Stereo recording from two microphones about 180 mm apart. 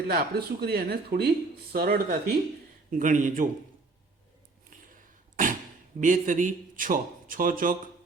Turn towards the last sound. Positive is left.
turn(degrees=-50)  # may be behind; listen again after turning